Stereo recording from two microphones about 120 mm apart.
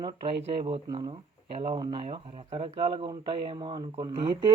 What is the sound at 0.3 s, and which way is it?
Speech, 50° right (ahead or behind).